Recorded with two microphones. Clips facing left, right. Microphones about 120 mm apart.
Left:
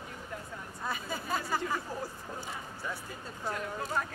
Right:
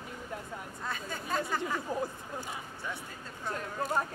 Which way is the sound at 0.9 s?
10° left (ahead or behind).